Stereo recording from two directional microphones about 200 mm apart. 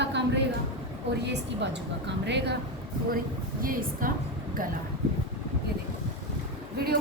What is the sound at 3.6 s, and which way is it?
Speech, 45° right (ahead or behind).